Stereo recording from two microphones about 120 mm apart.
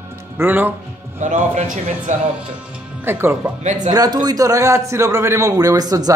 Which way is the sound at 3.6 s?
80° right.